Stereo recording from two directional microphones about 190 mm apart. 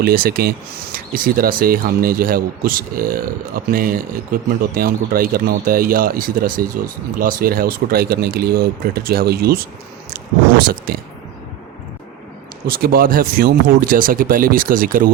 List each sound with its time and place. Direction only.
0.0 s speech: 50° right (ahead or behind)
12.6 s speech: 50° right (ahead or behind)